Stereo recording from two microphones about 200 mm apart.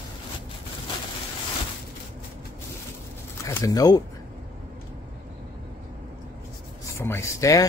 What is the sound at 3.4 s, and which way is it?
Speech, 15° left (ahead or behind).